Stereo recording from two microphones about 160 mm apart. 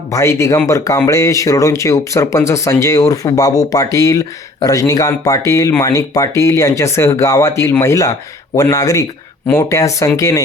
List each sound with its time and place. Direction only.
0.1 s speech: 15° left (ahead or behind)